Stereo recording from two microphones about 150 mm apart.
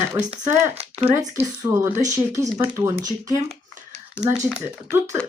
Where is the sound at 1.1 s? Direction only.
15° right (ahead or behind).